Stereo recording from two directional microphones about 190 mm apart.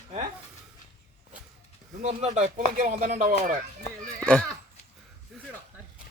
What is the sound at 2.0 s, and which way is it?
Speech, 35° right (ahead or behind).